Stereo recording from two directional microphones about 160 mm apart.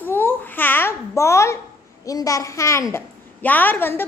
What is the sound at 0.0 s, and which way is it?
Babbling, 10° left (ahead or behind).